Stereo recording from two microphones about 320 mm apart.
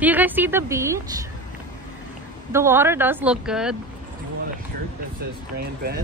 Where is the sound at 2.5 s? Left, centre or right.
Centre.